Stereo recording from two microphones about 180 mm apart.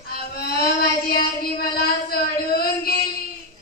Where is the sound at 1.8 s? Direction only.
60° left (ahead or behind).